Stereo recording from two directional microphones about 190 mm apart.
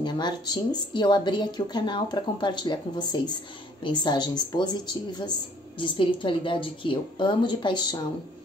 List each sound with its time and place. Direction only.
0.0 s speech: 25° left (ahead or behind)